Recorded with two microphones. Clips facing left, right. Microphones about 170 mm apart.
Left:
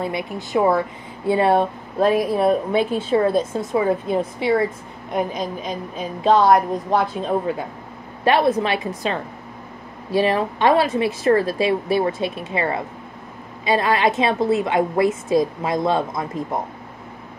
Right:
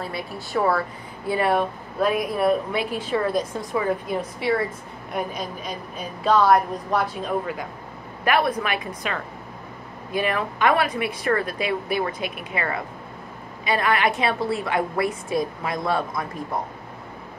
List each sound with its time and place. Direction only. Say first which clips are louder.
0.0 s a woman's voice: left 6 dB; 20° left (ahead or behind)
6.2 s a woman's voice: left 3 dB; 30° left (ahead or behind)